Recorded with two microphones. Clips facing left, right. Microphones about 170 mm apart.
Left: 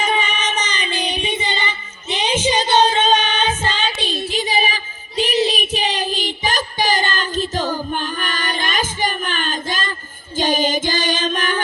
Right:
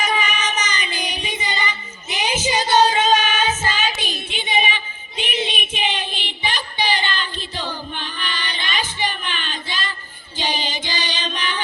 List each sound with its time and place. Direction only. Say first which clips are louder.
0.0 s music: left 2 dB; 10° right (ahead or behind)
3.0 s child singing: left 1 dB; 10° right (ahead or behind)
4.1 s female singing: left 3 dB; 35° left (ahead or behind)
10.3 s music: left 8 dB; 45° left (ahead or behind)